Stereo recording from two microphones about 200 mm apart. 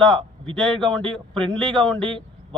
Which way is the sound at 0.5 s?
5° left (ahead or behind).